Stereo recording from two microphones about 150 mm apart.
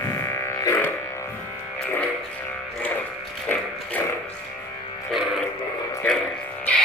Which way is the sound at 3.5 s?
10° left (ahead or behind).